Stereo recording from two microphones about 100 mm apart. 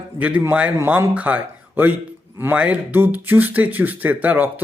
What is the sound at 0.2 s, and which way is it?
Speech, 15° right (ahead or behind).